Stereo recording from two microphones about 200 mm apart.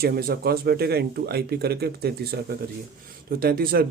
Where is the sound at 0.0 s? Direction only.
50° right (ahead or behind).